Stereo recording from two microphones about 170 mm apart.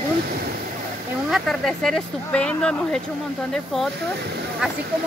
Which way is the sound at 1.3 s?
Centre (ahead or behind).